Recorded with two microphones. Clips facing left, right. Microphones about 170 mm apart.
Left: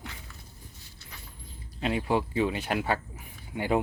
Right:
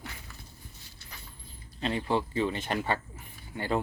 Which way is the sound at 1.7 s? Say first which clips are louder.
Left 2 dB; 10° left (ahead or behind).